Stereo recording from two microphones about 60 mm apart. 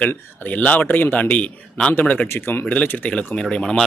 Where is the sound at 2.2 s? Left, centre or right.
Left.